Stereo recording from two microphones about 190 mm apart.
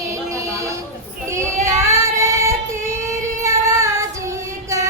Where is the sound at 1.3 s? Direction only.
15° right (ahead or behind).